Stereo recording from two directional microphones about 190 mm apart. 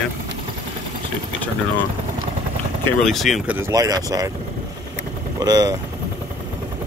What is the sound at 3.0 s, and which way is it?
Speech, centre (ahead or behind).